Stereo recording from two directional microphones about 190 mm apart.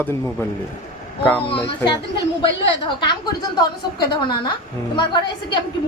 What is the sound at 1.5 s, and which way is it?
A woman's voice, 25° left (ahead or behind).